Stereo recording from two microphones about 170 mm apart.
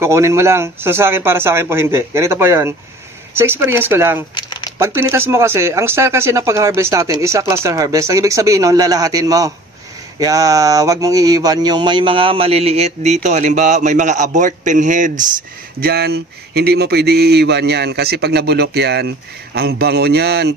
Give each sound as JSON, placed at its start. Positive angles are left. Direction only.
{"t": 0.0, "sound": "speech", "side_deg": -15}
{"t": 4.4, "sound": "crumpling", "side_deg": 25}
{"t": 4.7, "sound": "speech", "side_deg": -15}
{"t": 15.8, "sound": "speech", "side_deg": -70}